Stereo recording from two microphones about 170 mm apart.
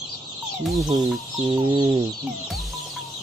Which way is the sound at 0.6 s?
Centre (ahead or behind).